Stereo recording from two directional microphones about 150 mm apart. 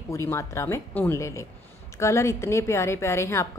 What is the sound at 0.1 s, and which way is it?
A woman's voice, 20° left (ahead or behind).